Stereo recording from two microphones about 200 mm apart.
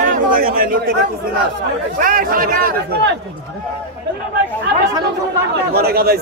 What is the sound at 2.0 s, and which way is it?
A man's voice, 45° right (ahead or behind).